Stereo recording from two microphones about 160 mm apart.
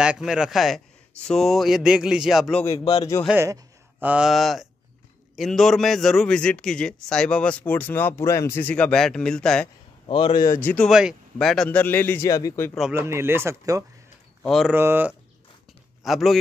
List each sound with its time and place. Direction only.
0.0 s speech: 5° right (ahead or behind)
3.3 s a man's voice: 20° right (ahead or behind)
4.0 s speech: 5° right (ahead or behind)
10.0 s speech: 30° left (ahead or behind)
10.5 s a man's voice: 10° left (ahead or behind)
10.9 s a man's voice: 5° right (ahead or behind); by 12.7 s 15° left (ahead or behind)
12.9 s speech: 15° right (ahead or behind)
14.4 s speech: centre (ahead or behind)
14.7 s speech: 15° right (ahead or behind)
16.0 s speech: centre (ahead or behind)